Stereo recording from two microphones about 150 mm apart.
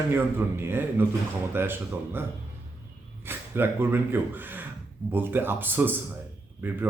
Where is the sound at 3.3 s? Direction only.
15° right (ahead or behind).